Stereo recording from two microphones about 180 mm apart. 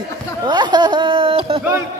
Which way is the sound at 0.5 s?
25° right (ahead or behind).